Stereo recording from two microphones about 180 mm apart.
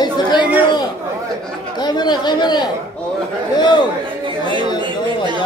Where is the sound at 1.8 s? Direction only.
25° left (ahead or behind).